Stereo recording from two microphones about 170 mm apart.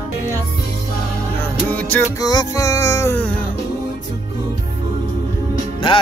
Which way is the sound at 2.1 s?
20° left (ahead or behind).